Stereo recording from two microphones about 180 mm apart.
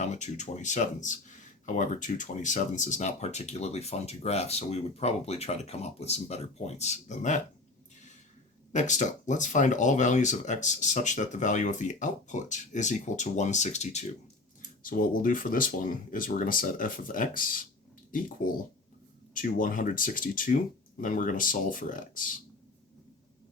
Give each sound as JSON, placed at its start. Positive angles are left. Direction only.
{"t": 0.0, "sound": "speech", "side_deg": 40}
{"t": 8.7, "sound": "speech", "side_deg": 45}
{"t": 14.8, "sound": "speech", "side_deg": 50}